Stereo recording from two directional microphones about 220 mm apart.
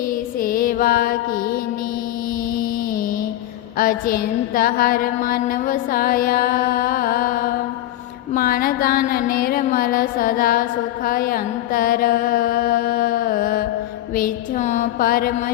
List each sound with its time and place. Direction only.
0.1 s music: 40° left (ahead or behind)
2.6 s music: 40° left (ahead or behind)
3.8 s a sound: 40° left (ahead or behind)